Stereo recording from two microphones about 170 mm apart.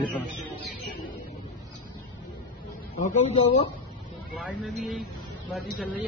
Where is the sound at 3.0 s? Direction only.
45° left (ahead or behind).